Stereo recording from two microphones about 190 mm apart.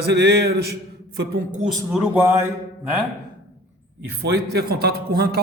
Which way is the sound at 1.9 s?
10° right (ahead or behind).